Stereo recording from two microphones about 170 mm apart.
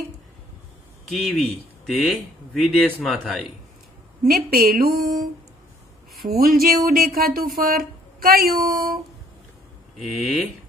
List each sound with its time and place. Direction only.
1.1 s a man's voice: centre (ahead or behind)
4.3 s speech: 60° right (ahead or behind)
6.2 s speech: 60° right (ahead or behind)
9.9 s a man's voice: centre (ahead or behind)